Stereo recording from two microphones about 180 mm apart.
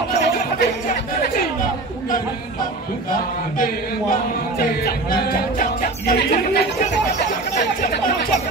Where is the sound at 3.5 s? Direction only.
50° left (ahead or behind).